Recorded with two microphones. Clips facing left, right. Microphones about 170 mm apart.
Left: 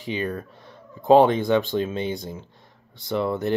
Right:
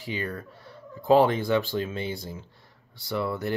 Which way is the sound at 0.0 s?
20° left (ahead or behind).